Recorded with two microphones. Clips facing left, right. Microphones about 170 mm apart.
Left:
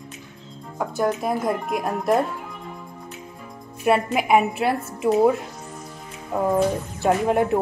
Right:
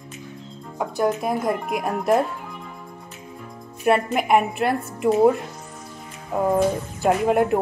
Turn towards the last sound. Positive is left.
turn(degrees=0)  # may be behind; listen again after turning